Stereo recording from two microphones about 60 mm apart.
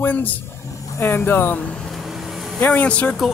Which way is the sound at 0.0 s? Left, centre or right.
Left.